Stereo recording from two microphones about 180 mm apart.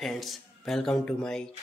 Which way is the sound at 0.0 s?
Centre (ahead or behind).